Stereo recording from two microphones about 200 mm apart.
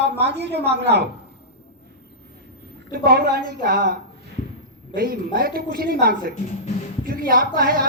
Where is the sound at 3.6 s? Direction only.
45° right (ahead or behind).